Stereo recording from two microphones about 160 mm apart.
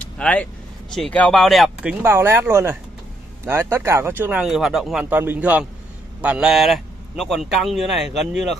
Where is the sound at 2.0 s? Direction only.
15° right (ahead or behind).